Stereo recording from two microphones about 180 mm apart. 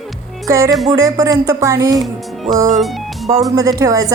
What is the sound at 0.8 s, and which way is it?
Speech, 20° right (ahead or behind).